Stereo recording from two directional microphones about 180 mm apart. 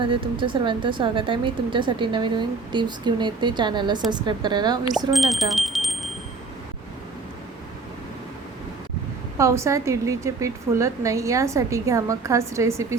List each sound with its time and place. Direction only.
0.0 s speech: 30° right (ahead or behind)
5.1 s speech: centre (ahead or behind)
9.4 s a woman's voice: 15° right (ahead or behind)